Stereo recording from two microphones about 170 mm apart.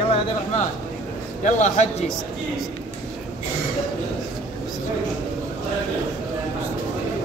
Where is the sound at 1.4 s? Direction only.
45° left (ahead or behind).